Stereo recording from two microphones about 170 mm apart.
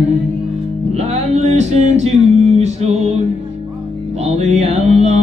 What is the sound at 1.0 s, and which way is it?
Music, 40° right (ahead or behind).